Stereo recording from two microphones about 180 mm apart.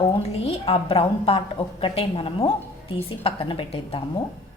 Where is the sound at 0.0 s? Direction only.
35° left (ahead or behind).